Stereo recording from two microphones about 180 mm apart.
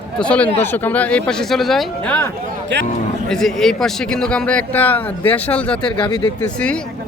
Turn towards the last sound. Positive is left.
turn(degrees=5)  # may be behind; listen again after turning